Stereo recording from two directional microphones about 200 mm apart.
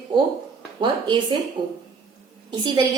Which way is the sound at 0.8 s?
25° right (ahead or behind).